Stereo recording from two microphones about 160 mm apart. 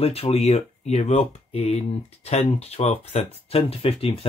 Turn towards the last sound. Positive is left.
turn(degrees=35)  # may be behind; listen again after turning